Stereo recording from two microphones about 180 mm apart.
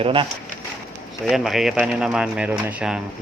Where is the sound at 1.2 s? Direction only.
Centre (ahead or behind).